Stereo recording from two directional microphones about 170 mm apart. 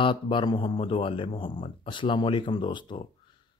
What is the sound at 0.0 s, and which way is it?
Speech, 30° left (ahead or behind).